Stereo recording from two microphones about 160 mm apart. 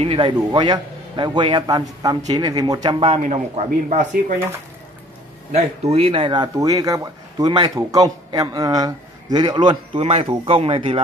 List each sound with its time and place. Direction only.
0.0 s speech: 35° right (ahead or behind)
3.1 s a man's voice: 45° right (ahead or behind)
5.5 s speech: 40° right (ahead or behind)